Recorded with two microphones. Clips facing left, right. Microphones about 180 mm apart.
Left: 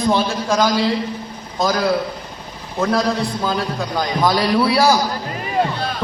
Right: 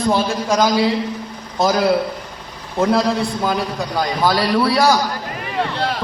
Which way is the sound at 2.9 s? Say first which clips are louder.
Even; centre (ahead or behind).